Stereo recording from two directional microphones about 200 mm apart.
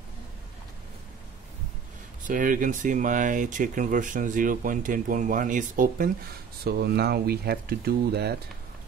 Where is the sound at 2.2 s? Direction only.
40° right (ahead or behind).